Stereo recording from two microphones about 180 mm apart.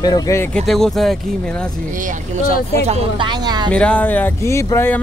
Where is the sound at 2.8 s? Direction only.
25° right (ahead or behind).